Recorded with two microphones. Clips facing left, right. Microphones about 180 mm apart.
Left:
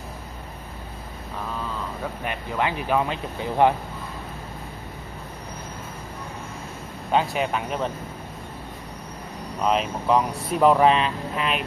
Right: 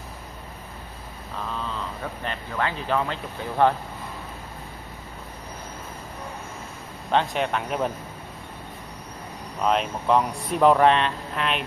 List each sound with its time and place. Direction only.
2.2 s speech: 15° left (ahead or behind)
7.1 s speech: 5° left (ahead or behind)
9.6 s speech: centre (ahead or behind)